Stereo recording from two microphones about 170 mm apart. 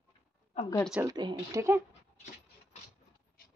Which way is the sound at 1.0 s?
25° right (ahead or behind).